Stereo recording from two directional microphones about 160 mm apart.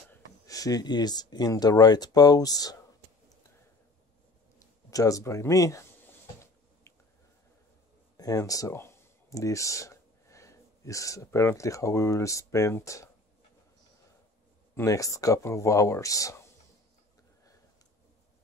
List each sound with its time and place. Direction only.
0.5 s speech: 20° left (ahead or behind)
4.6 s speech: 20° left (ahead or behind)
8.2 s speech: 20° left (ahead or behind)
14.8 s speech: 20° left (ahead or behind)